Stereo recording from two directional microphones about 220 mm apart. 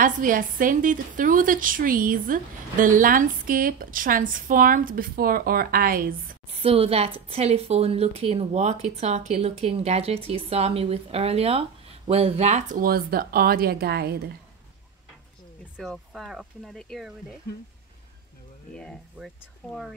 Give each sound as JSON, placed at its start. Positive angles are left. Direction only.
{"t": 0.0, "sound": "a woman's voice", "side_deg": -40}
{"t": 6.5, "sound": "a woman's voice", "side_deg": -25}
{"t": 15.8, "sound": "speech", "side_deg": 0}
{"t": 18.8, "sound": "speech", "side_deg": 0}